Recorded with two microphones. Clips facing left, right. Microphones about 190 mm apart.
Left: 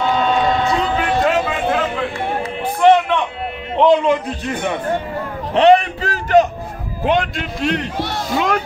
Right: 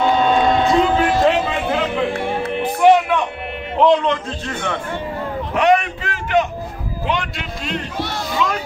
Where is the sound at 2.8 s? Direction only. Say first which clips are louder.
Left 1 dB; 10° right (ahead or behind).